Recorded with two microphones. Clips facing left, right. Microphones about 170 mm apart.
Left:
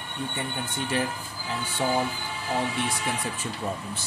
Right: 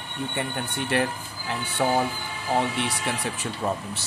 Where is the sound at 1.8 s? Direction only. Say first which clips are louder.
Right 3 dB; 65° right (ahead or behind).